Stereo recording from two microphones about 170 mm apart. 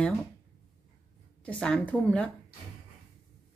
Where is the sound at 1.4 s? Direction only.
5° left (ahead or behind).